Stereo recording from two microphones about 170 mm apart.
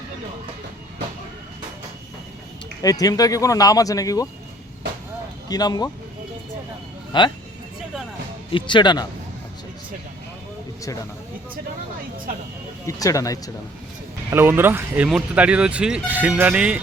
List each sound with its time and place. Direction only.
2.8 s speech: 20° left (ahead or behind)
5.5 s speech: 20° left (ahead or behind)
7.1 s speech: 25° left (ahead or behind)
8.5 s speech: 30° left (ahead or behind)
12.8 s speech: 20° left (ahead or behind)
14.3 s speech: 15° right (ahead or behind)